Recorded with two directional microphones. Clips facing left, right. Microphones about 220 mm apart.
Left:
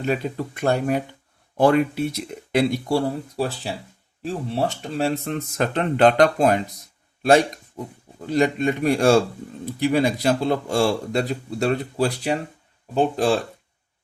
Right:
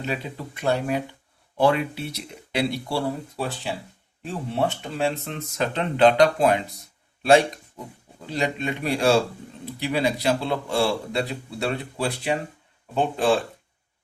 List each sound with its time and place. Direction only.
0.0 s a man's voice: 50° left (ahead or behind)
5.2 s a man's voice: 50° left (ahead or behind)